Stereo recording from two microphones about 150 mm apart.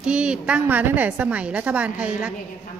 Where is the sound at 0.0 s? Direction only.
5° right (ahead or behind).